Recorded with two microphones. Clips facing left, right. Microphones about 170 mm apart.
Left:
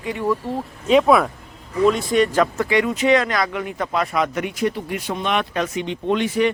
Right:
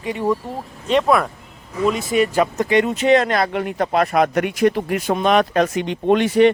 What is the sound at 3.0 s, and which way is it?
Speech, 35° right (ahead or behind).